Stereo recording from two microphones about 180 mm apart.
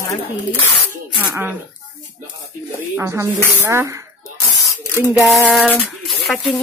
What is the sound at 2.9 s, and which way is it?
Speech, 15° right (ahead or behind).